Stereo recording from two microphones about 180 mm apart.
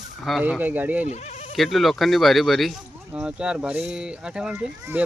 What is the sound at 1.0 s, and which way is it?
Sheep, 40° left (ahead or behind).